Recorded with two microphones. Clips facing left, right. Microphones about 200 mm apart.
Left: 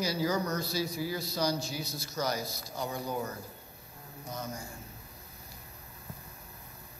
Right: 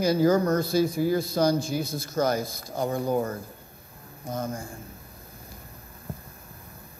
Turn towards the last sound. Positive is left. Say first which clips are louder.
# right 8 dB
turn(degrees=-50)  # may be behind; listen again after turning